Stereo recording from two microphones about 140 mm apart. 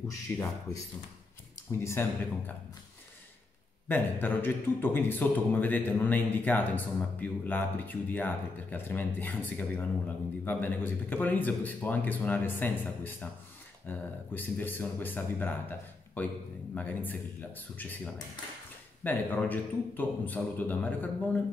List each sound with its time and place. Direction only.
0.3 s a man's voice: 15° left (ahead or behind)
1.7 s speech: 20° left (ahead or behind)
3.9 s a man's voice: 15° left (ahead or behind)